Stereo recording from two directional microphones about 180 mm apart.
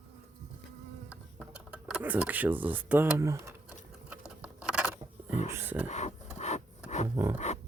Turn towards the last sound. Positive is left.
turn(degrees=-15)  # may be behind; listen again after turning